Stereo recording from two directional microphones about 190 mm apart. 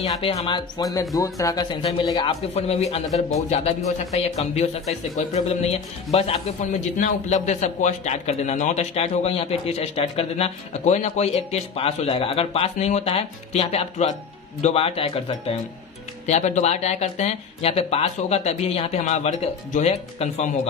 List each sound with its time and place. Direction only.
0.0 s speech: 30° left (ahead or behind)